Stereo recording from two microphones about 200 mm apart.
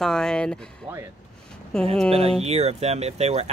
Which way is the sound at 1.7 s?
5° left (ahead or behind).